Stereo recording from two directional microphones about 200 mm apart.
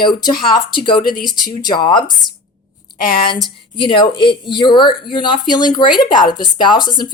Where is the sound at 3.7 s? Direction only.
25° left (ahead or behind).